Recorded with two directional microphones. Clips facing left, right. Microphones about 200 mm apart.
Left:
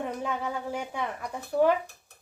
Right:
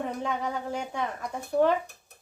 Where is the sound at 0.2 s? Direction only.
5° left (ahead or behind).